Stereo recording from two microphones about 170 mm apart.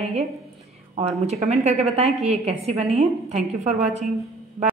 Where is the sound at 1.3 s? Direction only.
40° right (ahead or behind).